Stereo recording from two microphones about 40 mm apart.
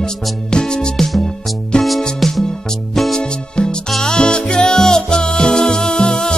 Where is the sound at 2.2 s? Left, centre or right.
Centre.